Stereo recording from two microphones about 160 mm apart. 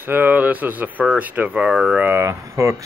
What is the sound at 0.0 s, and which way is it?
Speech, 10° right (ahead or behind).